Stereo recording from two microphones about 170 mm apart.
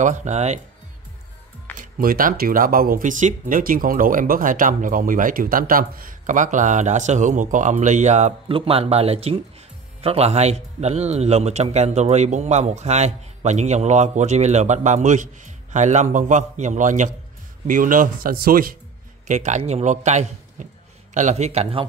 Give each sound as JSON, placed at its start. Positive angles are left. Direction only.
{"t": 0.0, "sound": "speech", "side_deg": -45}
{"t": 1.8, "sound": "a man's voice", "side_deg": -55}
{"t": 19.2, "sound": "a man's voice", "side_deg": -45}